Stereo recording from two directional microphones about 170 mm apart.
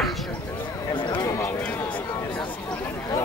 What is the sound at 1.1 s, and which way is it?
Run, 25° left (ahead or behind).